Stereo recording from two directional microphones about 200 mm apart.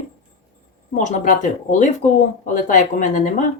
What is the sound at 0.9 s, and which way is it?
Speech, 40° left (ahead or behind).